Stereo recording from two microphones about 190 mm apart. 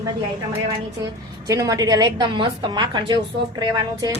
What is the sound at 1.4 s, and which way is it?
A woman's voice, 20° right (ahead or behind).